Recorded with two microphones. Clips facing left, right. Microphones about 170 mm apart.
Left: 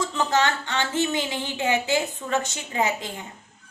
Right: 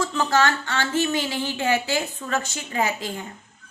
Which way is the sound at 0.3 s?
20° left (ahead or behind).